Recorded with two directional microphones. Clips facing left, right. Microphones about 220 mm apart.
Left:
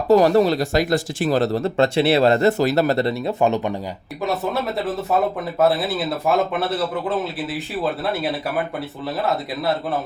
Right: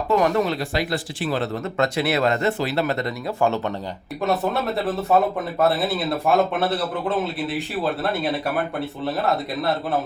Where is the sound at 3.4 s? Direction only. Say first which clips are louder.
Left 2 dB; 15° left (ahead or behind).